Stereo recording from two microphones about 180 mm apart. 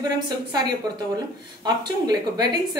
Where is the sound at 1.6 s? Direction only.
20° right (ahead or behind).